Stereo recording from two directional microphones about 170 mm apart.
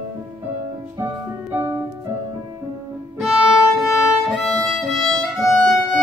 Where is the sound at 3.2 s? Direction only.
Centre (ahead or behind).